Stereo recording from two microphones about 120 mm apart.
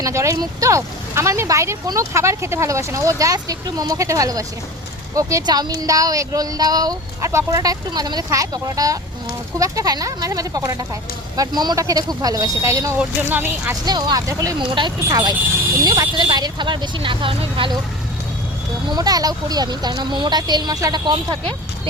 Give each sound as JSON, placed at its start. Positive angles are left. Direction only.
{"t": 0.0, "sound": "speech", "side_deg": -25}
{"t": 13.0, "sound": "speech", "side_deg": -15}
{"t": 13.8, "sound": "speech", "side_deg": -35}
{"t": 14.6, "sound": "speech", "side_deg": -40}
{"t": 18.9, "sound": "speech", "side_deg": -35}